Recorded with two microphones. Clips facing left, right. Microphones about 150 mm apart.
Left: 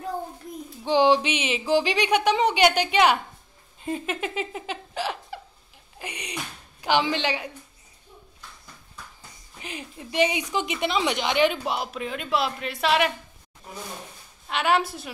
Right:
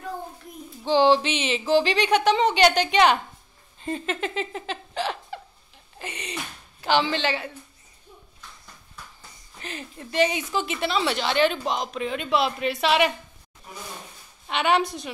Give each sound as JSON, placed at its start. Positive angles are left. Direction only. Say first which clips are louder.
{"t": 0.8, "sound": "speech", "louder": "right 1 dB", "side_deg": 10}
{"t": 3.8, "sound": "a sound", "louder": "right 1 dB", "side_deg": 10}
{"t": 5.9, "sound": "speech", "louder": "right 1 dB", "side_deg": 10}
{"t": 9.6, "sound": "speech", "louder": "even", "side_deg": 10}
{"t": 14.5, "sound": "a woman's voice", "louder": "right 1 dB", "side_deg": 0}